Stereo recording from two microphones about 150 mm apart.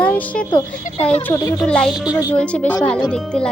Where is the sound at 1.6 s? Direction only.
5° left (ahead or behind).